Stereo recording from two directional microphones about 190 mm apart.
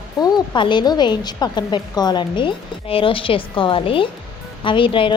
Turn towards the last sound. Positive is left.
turn(degrees=25)  # may be behind; listen again after turning